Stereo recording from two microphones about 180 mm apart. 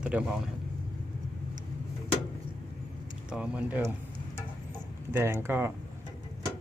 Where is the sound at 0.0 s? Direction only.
5° right (ahead or behind).